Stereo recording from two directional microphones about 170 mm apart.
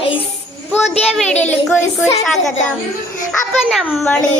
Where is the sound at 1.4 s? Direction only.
10° left (ahead or behind).